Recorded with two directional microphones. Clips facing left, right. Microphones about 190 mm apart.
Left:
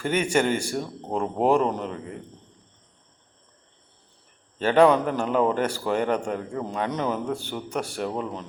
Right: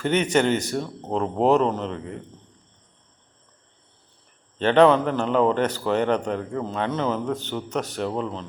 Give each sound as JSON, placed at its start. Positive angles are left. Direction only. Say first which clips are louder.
{"t": 0.0, "sound": "a man's voice", "louder": "right 2 dB", "side_deg": 10}
{"t": 4.5, "sound": "a man's voice", "louder": "right 2 dB", "side_deg": 10}